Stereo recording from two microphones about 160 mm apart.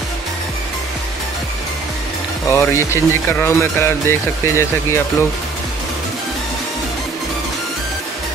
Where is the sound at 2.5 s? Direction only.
15° left (ahead or behind).